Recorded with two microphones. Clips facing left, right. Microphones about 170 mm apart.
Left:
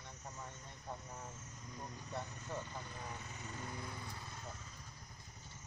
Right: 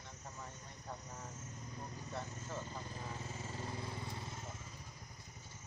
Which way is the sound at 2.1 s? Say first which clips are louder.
Left 1 dB; 15° left (ahead or behind).